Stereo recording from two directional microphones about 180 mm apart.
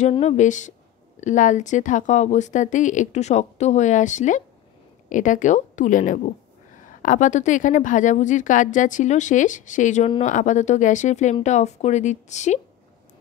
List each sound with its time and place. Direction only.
0.1 s speech: 35° left (ahead or behind)